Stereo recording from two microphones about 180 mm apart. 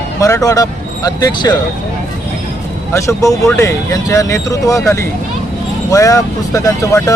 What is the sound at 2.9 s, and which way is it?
Speech, 15° left (ahead or behind).